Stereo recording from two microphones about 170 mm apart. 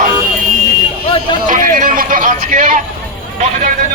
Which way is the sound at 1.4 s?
50° right (ahead or behind).